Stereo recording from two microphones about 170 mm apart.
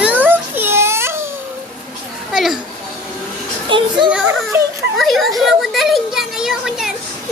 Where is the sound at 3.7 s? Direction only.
30° right (ahead or behind).